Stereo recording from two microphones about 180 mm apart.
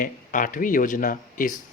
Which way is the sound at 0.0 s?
45° left (ahead or behind).